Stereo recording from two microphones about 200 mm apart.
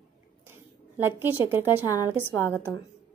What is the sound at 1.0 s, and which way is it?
Speech, 10° right (ahead or behind).